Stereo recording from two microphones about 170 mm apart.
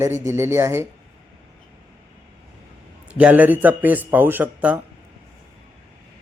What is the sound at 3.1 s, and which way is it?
Speech, 5° right (ahead or behind).